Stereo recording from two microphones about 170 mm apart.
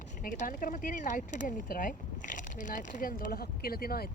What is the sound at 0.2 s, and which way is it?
Speech, 55° left (ahead or behind).